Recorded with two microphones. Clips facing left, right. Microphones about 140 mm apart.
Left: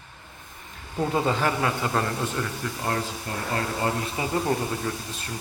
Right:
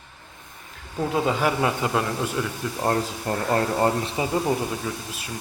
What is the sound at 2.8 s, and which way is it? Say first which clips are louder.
Speech: right 6 dB; 35° right (ahead or behind).